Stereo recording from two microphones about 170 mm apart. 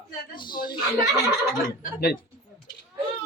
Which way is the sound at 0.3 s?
25° left (ahead or behind).